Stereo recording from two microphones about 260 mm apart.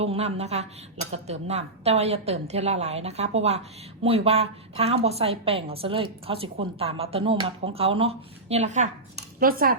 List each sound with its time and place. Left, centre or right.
0.0 s a woman's voice: right